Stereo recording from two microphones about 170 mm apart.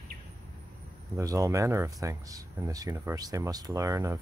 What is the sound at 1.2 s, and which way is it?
Speech, 20° right (ahead or behind).